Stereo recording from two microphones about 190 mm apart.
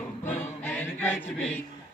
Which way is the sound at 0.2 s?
10° left (ahead or behind).